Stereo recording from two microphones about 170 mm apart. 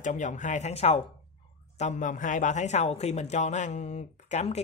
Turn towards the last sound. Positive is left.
turn(degrees=40)  # may be behind; listen again after turning